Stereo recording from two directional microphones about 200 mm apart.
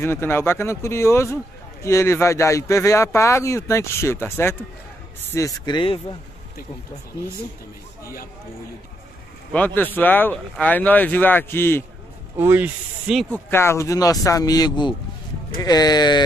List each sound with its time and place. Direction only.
0.0 s a man's voice: 10° left (ahead or behind)
9.5 s a man's voice: 10° left (ahead or behind)
12.4 s a man's voice: 10° right (ahead or behind); by 16.3 s 20° left (ahead or behind)